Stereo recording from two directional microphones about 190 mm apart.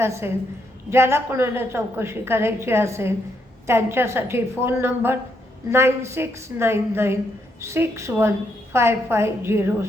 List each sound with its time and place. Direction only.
0.0 s a woman's voice: 15° right (ahead or behind)